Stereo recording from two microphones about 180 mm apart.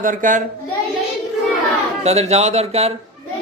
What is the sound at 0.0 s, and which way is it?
Speech, 45° right (ahead or behind).